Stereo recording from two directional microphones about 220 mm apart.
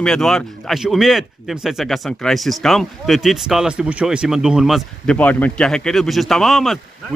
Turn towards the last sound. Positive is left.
turn(degrees=0)  # may be behind; listen again after turning